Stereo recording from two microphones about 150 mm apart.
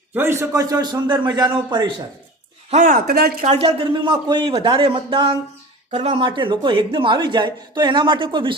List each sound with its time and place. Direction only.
0.1 s a man's voice: 15° right (ahead or behind)
2.6 s speech: 55° right (ahead or behind); by 3.3 s 90° right
3.4 s speech: 45° right (ahead or behind)